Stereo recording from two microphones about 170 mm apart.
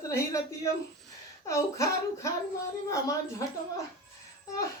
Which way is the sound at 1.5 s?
20° left (ahead or behind).